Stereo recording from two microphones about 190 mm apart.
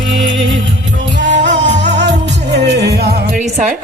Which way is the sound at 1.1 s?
70° right (ahead or behind).